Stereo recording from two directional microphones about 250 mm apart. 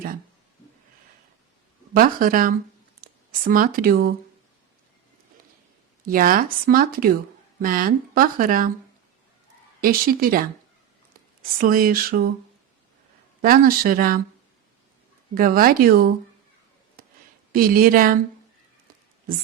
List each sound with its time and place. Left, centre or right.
1.9 s speech: right
6.1 s speech: right
9.8 s speech: right
11.5 s speech: right
13.4 s speech: right
15.4 s speech: right
17.5 s speech: right